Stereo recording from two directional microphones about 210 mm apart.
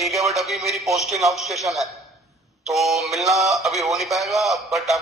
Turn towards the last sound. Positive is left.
turn(degrees=0)  # may be behind; listen again after turning